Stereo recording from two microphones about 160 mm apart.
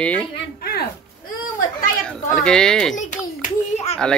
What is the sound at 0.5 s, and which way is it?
Speech, 75° left (ahead or behind).